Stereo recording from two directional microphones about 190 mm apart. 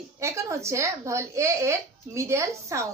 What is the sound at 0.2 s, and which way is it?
Speech, 15° right (ahead or behind).